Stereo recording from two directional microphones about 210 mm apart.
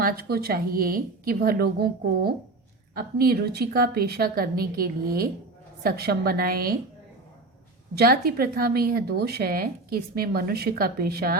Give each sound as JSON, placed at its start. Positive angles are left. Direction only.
{"t": 0.0, "sound": "speech", "side_deg": -45}
{"t": 7.9, "sound": "speech", "side_deg": -45}